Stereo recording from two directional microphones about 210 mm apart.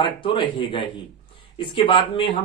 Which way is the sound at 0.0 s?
25° left (ahead or behind).